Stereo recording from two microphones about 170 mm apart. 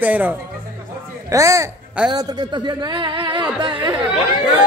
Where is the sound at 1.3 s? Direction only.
20° right (ahead or behind).